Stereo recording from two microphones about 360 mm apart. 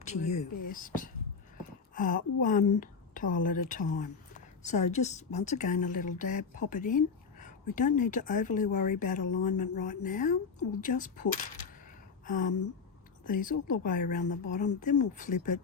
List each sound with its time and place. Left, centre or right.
0.0 s speech: centre